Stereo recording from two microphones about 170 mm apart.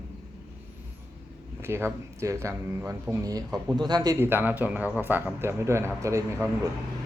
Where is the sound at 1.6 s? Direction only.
15° right (ahead or behind).